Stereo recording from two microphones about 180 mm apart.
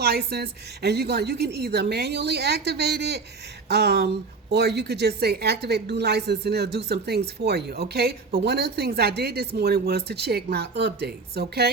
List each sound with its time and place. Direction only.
0.0 s speech: 60° right (ahead or behind)